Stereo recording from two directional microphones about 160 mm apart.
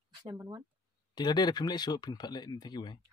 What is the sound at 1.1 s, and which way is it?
Speech, 25° left (ahead or behind).